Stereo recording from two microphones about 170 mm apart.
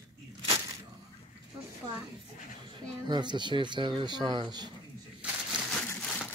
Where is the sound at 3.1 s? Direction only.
25° right (ahead or behind).